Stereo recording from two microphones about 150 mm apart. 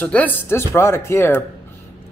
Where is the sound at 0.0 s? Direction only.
10° left (ahead or behind).